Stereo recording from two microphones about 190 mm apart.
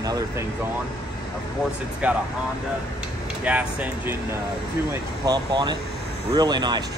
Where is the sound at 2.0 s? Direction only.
5° right (ahead or behind).